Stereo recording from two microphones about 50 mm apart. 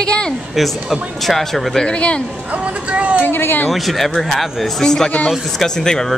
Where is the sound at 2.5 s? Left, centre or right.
Right.